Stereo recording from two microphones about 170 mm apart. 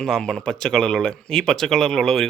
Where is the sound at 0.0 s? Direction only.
5° left (ahead or behind).